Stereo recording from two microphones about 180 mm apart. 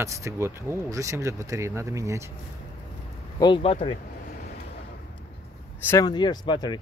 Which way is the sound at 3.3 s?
25° left (ahead or behind).